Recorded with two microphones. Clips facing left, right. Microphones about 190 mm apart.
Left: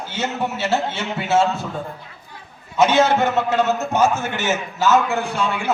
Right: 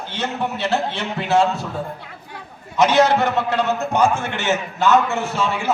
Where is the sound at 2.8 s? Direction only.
5° left (ahead or behind).